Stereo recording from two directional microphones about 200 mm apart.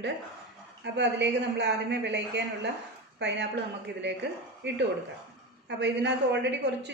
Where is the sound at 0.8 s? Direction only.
60° right (ahead or behind).